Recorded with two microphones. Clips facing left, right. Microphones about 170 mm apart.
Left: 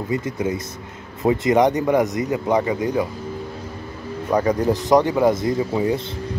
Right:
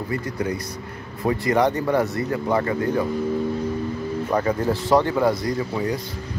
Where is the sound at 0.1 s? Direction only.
20° left (ahead or behind).